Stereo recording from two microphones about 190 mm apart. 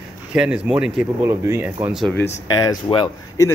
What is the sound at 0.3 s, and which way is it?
Speech, 5° right (ahead or behind).